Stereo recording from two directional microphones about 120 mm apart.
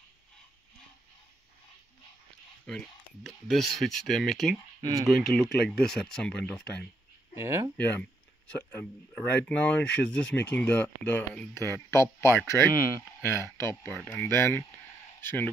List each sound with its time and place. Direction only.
2.7 s speech: 5° left (ahead or behind)
7.3 s speech: 25° right (ahead or behind)
7.7 s speech: 15° left (ahead or behind)